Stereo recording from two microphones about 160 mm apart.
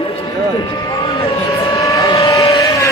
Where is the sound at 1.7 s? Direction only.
20° left (ahead or behind).